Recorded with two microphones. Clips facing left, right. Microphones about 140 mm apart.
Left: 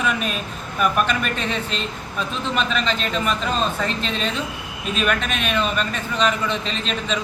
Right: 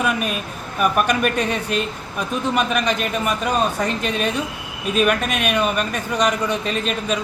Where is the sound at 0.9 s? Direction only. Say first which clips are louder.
Right 3 dB; 15° right (ahead or behind).